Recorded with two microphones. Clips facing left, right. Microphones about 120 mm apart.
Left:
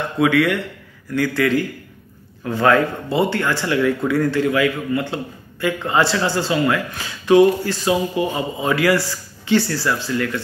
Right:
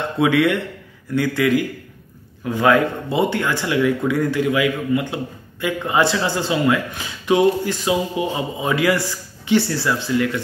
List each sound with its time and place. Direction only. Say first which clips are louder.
0.2 s a man's voice: even; 20° right (ahead or behind)